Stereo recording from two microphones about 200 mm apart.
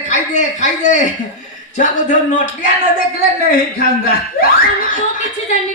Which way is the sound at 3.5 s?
45° left (ahead or behind).